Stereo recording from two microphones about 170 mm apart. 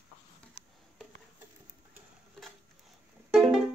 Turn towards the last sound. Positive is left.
turn(degrees=0)  # may be behind; listen again after turning